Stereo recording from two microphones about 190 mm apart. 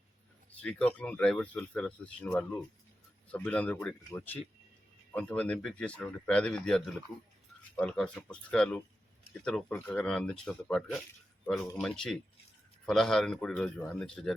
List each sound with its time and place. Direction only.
0.6 s speech: 5° left (ahead or behind)